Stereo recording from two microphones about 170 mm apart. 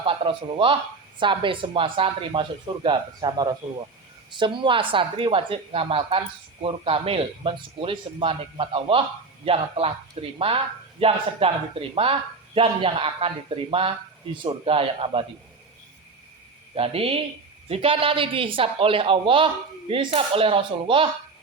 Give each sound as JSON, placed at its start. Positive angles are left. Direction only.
{"t": 0.0, "sound": "speech", "side_deg": -30}
{"t": 16.7, "sound": "speech", "side_deg": -35}